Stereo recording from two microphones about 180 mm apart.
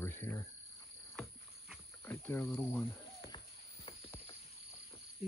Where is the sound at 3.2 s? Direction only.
30° left (ahead or behind).